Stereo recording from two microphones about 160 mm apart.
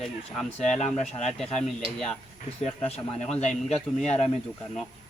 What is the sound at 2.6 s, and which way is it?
Speech, 40° left (ahead or behind).